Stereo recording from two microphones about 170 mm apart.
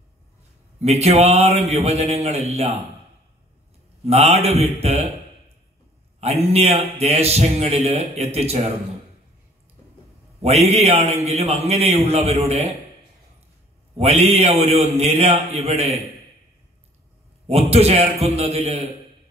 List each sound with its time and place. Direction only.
0.7 s speech: 40° right (ahead or behind)
4.0 s speech: 40° right (ahead or behind)
6.2 s speech: 35° right (ahead or behind)
10.4 s speech: 40° right (ahead or behind)
13.9 s speech: 35° right (ahead or behind)
17.5 s speech: 35° right (ahead or behind)